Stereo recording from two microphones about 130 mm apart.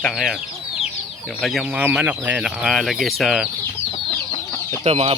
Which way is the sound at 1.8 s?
10° right (ahead or behind).